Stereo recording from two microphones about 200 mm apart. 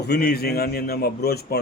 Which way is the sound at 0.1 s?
50° left (ahead or behind).